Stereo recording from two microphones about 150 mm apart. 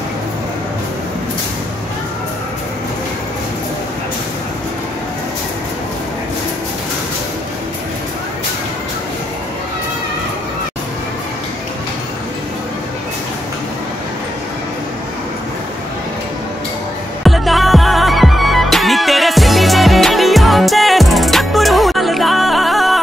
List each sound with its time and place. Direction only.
17.2 s music: centre (ahead or behind)